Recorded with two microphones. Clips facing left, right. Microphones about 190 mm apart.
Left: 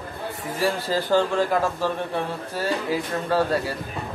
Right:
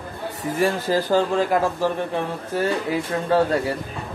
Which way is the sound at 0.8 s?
15° right (ahead or behind).